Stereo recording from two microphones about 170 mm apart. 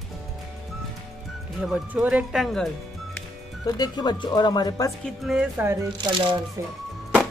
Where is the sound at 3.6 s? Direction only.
25° left (ahead or behind).